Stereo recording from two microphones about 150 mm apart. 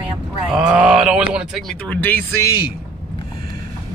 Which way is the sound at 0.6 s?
5° right (ahead or behind).